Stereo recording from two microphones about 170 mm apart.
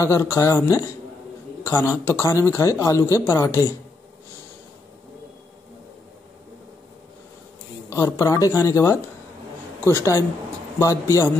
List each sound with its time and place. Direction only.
0.0 s speech: 15° left (ahead or behind)
1.6 s a sound: 15° left (ahead or behind)
2.0 s speech: 15° left (ahead or behind)
7.9 s speech: 20° left (ahead or behind)